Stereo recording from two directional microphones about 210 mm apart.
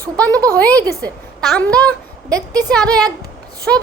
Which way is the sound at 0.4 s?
5° left (ahead or behind).